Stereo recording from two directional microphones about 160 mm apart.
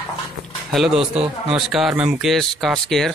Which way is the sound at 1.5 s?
5° right (ahead or behind).